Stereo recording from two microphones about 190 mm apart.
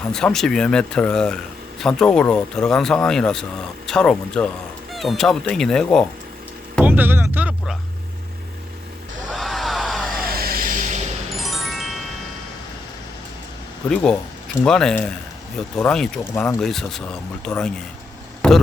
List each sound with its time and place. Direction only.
0.1 s speech: 5° left (ahead or behind)
6.8 s speech: 10° right (ahead or behind)
9.3 s a sound: centre (ahead or behind)
10.2 s vehicle: 50° right (ahead or behind)
11.3 s music: centre (ahead or behind)
13.9 s speech: 5° left (ahead or behind)
18.4 s a sound: 5° left (ahead or behind)